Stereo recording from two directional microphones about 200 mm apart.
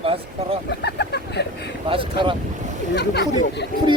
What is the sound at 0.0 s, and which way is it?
Speech, 30° right (ahead or behind).